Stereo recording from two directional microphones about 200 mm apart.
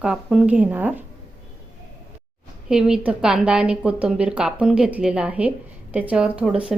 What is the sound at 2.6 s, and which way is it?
A woman's voice, 5° right (ahead or behind).